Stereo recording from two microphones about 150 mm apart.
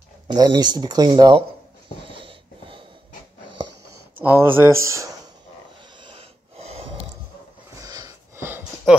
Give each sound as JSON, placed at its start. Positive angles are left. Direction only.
{"t": 0.3, "sound": "speech", "side_deg": -30}
{"t": 2.1, "sound": "wheeze", "side_deg": -35}
{"t": 4.2, "sound": "speech", "side_deg": -15}
{"t": 6.0, "sound": "snort", "side_deg": -40}
{"t": 7.8, "sound": "wheeze", "side_deg": -25}